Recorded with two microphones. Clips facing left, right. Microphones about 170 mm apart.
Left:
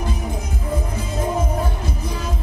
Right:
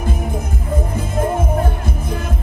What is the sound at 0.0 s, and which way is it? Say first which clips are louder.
Music: right 3 dB; 50° right (ahead or behind).